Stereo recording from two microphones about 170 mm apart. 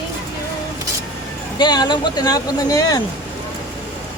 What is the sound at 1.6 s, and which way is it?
Speech, 25° left (ahead or behind).